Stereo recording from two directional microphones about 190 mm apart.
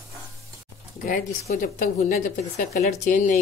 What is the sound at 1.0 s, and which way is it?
A woman's voice, 45° left (ahead or behind).